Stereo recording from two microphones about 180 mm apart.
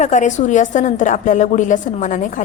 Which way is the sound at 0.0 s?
40° left (ahead or behind).